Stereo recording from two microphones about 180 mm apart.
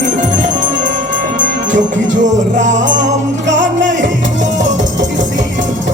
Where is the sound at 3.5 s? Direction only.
80° right.